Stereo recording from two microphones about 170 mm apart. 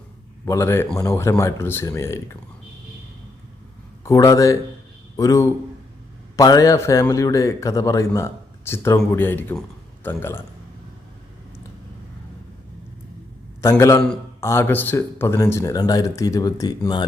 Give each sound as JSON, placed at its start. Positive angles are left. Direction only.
{"t": 0.4, "sound": "speech", "side_deg": 15}
{"t": 4.0, "sound": "speech", "side_deg": 20}
{"t": 13.6, "sound": "speech", "side_deg": 15}